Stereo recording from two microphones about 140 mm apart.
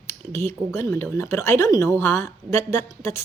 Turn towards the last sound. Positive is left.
turn(degrees=20)  # may be behind; listen again after turning